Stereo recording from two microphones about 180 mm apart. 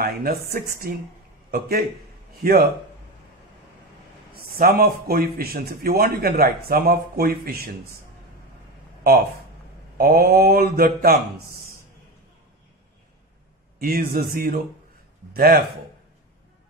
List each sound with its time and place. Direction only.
0.0 s a man's voice: 55° right (ahead or behind)
4.6 s a man's voice: 55° right (ahead or behind)
9.9 s a man's voice: 55° right (ahead or behind)
13.7 s a man's voice: 55° right (ahead or behind)